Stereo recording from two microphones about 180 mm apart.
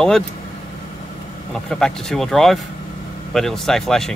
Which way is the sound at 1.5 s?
5° left (ahead or behind).